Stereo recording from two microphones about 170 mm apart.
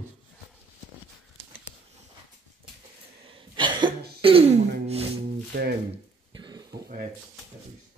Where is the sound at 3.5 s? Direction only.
30° right (ahead or behind).